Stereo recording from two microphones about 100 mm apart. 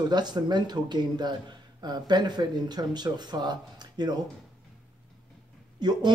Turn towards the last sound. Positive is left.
turn(degrees=-45)  # may be behind; listen again after turning